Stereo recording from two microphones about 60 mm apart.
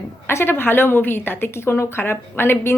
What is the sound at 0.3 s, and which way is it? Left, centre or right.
A woman's voice, left.